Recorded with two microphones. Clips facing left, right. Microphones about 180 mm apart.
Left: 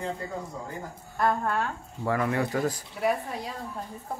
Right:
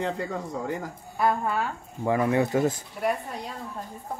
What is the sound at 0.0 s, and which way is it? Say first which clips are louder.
Speech: right 4 dB; 80° right.